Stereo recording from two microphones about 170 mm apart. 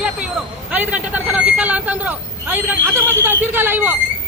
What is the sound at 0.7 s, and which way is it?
Speech, 10° right (ahead or behind).